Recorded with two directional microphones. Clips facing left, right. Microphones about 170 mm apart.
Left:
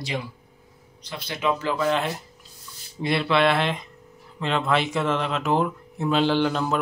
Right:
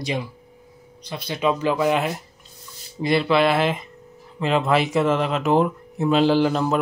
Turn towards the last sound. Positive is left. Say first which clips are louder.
# right 4 dB
turn(degrees=-5)  # may be behind; listen again after turning